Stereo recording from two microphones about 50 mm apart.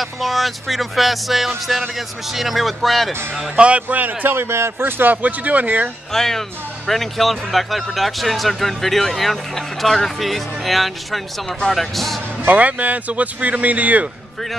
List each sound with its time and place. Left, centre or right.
0.0 s speech: centre
3.5 s a man's voice: right
4.0 s a man's voice: right
6.1 s speech: centre
12.4 s a man's voice: right